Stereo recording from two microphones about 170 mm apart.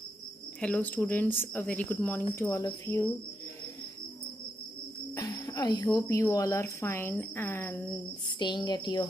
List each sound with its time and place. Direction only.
0.6 s speech: 5° left (ahead or behind)
5.1 s a woman's voice: 20° left (ahead or behind)
8.4 s a woman's voice: 25° left (ahead or behind)